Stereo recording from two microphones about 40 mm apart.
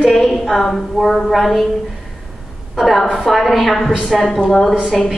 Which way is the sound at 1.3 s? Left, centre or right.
Centre.